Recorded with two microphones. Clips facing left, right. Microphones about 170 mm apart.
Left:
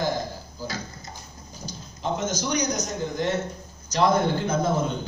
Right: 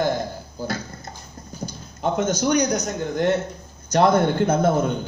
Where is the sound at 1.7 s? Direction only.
55° right (ahead or behind).